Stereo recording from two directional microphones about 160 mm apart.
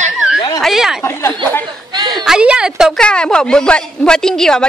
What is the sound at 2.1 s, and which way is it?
A woman's voice, centre (ahead or behind).